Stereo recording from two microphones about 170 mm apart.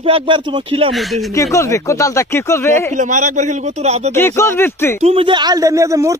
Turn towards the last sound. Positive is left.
turn(degrees=-20)  # may be behind; listen again after turning